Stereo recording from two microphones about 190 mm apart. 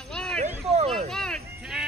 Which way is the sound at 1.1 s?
5° left (ahead or behind).